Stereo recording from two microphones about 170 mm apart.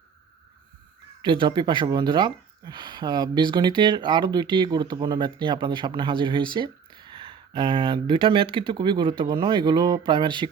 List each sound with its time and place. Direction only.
1.2 s speech: 30° right (ahead or behind)